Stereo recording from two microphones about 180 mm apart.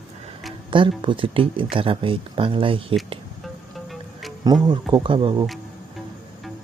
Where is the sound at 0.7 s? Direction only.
25° right (ahead or behind).